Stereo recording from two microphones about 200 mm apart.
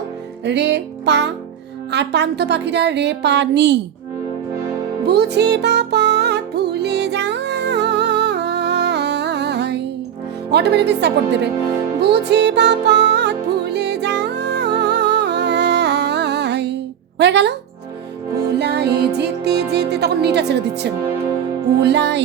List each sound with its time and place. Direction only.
0.4 s a woman's voice: 60° right (ahead or behind)
5.0 s music: 55° right (ahead or behind)
10.5 s a woman's voice: 55° right (ahead or behind)
11.9 s music: 55° right (ahead or behind)
17.2 s speech: 60° right (ahead or behind)
18.6 s music: 55° right (ahead or behind)
21.7 s a woman's voice: 55° right (ahead or behind)